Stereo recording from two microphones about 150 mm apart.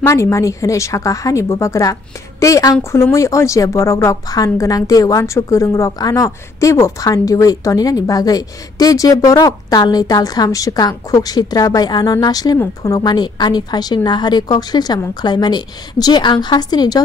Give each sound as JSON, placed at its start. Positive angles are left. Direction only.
{"t": 0.0, "sound": "speech", "side_deg": 20}